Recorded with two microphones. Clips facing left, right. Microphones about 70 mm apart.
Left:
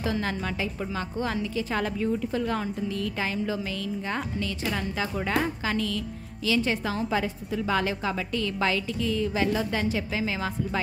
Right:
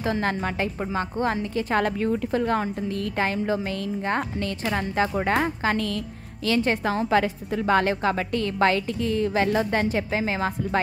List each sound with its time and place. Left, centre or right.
0.0 s a woman's voice: right
7.1 s a woman's voice: right